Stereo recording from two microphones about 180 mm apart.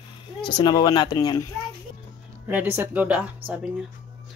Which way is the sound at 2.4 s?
10° right (ahead or behind).